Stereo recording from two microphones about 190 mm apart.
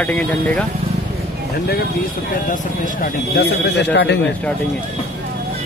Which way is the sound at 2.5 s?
50° left (ahead or behind).